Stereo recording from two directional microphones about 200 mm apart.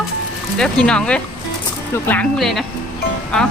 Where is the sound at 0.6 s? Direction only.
5° left (ahead or behind).